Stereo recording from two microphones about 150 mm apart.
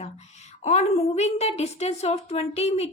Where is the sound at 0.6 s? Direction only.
50° left (ahead or behind).